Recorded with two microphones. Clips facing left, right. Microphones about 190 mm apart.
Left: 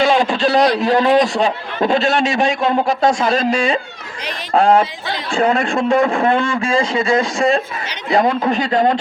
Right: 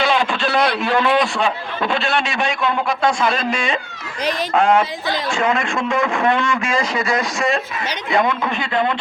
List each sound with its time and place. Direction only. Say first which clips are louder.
0.0 s a man's voice: left 4 dB; 40° left (ahead or behind)